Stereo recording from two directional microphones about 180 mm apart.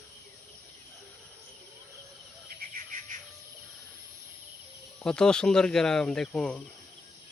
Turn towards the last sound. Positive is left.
turn(degrees=5)  # may be behind; listen again after turning